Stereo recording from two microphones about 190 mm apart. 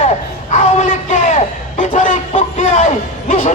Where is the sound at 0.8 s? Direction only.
40° left (ahead or behind).